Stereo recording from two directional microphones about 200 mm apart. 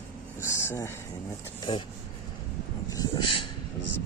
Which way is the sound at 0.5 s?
15° left (ahead or behind).